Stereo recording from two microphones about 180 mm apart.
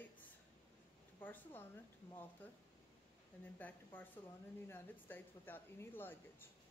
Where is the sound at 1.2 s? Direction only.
10° left (ahead or behind).